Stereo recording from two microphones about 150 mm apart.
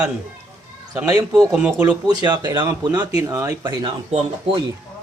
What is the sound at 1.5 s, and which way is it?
Speech, 5° right (ahead or behind).